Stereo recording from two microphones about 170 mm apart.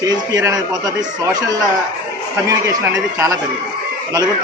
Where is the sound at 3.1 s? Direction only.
15° right (ahead or behind).